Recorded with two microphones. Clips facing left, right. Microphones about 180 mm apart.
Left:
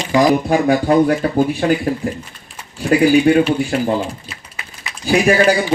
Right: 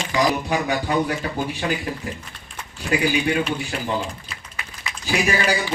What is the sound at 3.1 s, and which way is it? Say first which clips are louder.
Speech: left 10 dB; 45° left (ahead or behind).